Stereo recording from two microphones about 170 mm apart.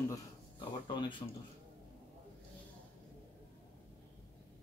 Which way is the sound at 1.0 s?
30° left (ahead or behind).